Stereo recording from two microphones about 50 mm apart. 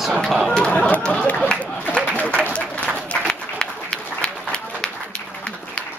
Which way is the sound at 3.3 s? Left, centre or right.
Centre.